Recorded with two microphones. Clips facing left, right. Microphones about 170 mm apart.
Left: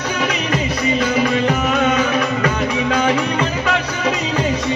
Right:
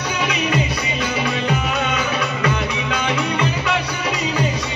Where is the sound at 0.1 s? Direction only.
40° left (ahead or behind).